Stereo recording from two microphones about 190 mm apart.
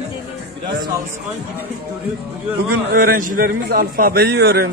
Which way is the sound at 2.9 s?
50° right (ahead or behind).